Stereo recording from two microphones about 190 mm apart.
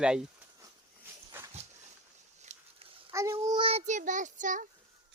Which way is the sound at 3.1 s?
15° right (ahead or behind).